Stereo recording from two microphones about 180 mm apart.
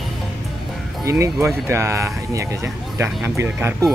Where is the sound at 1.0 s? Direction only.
15° right (ahead or behind).